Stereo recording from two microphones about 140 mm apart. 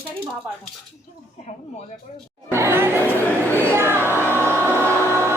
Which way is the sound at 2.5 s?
20° right (ahead or behind).